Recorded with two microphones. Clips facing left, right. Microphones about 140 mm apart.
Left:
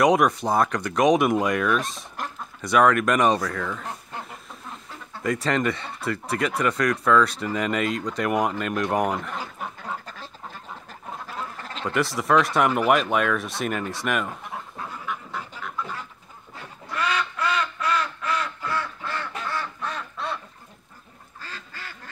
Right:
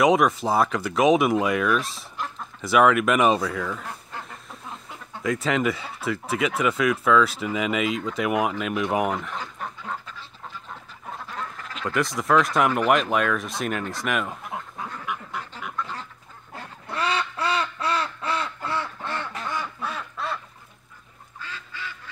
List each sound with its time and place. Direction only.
0.0 s speech: centre (ahead or behind)
5.2 s speech: centre (ahead or behind)
10.0 s duck: 45° left (ahead or behind)
11.8 s speech: centre (ahead or behind)
16.9 s duck: 30° right (ahead or behind)
19.5 s duck: 10° right (ahead or behind)
21.4 s duck: 40° left (ahead or behind)